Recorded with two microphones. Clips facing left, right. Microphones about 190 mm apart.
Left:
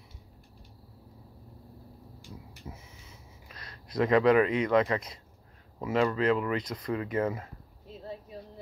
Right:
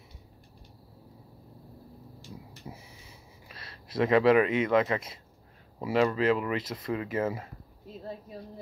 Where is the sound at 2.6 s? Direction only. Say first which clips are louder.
Right 1 dB; 15° right (ahead or behind).